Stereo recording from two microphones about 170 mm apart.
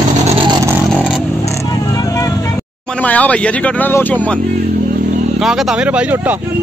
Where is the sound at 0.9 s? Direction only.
Centre (ahead or behind).